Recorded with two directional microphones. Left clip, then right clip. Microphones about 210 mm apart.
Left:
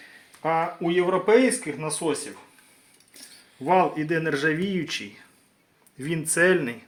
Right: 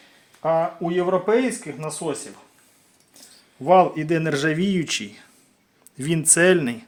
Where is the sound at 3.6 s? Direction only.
45° right (ahead or behind).